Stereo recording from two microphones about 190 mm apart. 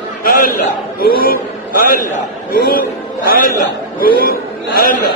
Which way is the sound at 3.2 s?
50° left (ahead or behind).